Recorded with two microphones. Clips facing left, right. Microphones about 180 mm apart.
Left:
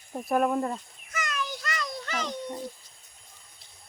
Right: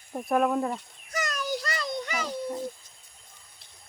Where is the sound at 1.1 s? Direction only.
40° right (ahead or behind).